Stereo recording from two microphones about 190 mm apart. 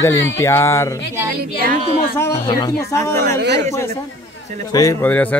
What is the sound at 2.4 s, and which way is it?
A woman's voice, 20° left (ahead or behind).